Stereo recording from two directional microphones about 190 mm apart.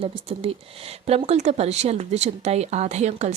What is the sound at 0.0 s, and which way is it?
A woman's voice, 30° right (ahead or behind).